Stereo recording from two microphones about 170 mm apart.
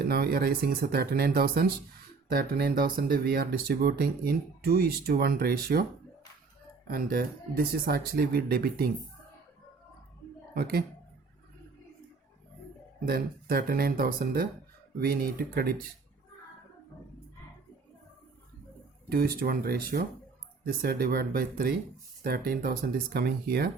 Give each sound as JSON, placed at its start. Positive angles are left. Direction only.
{"t": 0.0, "sound": "speech", "side_deg": -65}
{"t": 6.8, "sound": "speech", "side_deg": -60}
{"t": 10.5, "sound": "speech", "side_deg": -65}
{"t": 13.1, "sound": "speech", "side_deg": -60}
{"t": 19.0, "sound": "speech", "side_deg": -60}